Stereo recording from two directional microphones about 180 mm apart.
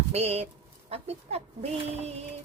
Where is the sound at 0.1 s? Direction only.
35° right (ahead or behind).